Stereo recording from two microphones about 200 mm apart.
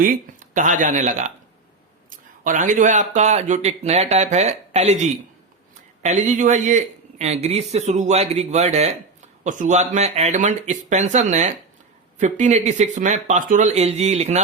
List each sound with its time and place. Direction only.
0.0 s speech: 40° right (ahead or behind)